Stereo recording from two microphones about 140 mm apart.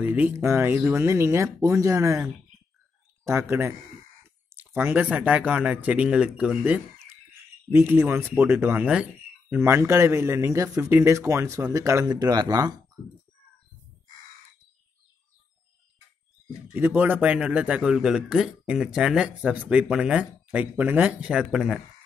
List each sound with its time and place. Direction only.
0.0 s speech: 10° right (ahead or behind)
3.3 s speech: 20° right (ahead or behind)
16.7 s speech: 15° right (ahead or behind)